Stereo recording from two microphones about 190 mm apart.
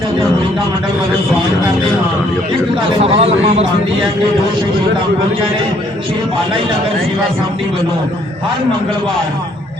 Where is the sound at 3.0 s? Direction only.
30° right (ahead or behind).